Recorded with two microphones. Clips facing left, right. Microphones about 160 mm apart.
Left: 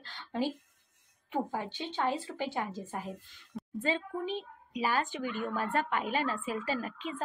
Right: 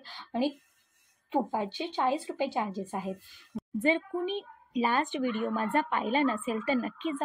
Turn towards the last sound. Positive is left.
turn(degrees=-20)  # may be behind; listen again after turning